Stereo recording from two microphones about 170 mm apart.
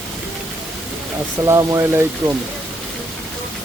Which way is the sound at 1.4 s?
20° right (ahead or behind).